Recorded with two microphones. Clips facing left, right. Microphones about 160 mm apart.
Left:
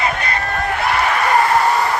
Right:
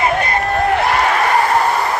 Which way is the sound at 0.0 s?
50° right (ahead or behind).